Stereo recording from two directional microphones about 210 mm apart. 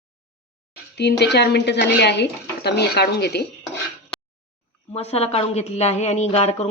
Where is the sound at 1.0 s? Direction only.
55° left (ahead or behind).